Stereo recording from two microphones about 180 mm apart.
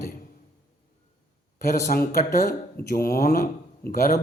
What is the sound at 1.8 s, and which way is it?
Speech, 45° left (ahead or behind).